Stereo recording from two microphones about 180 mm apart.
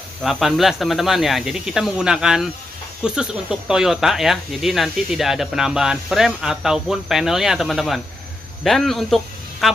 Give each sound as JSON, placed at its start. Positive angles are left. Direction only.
{"t": 0.2, "sound": "speech", "side_deg": 0}